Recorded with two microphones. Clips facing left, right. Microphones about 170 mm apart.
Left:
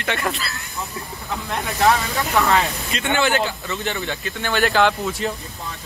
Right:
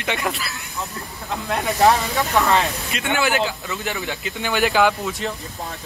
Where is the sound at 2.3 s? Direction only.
Centre (ahead or behind).